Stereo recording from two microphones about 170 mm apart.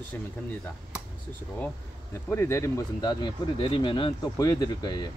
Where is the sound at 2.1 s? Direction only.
15° left (ahead or behind).